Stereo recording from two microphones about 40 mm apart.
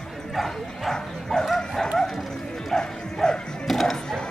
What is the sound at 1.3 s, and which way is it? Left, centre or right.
Dog, centre.